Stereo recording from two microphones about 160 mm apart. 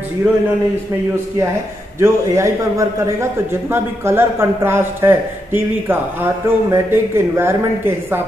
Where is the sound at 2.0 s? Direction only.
20° right (ahead or behind).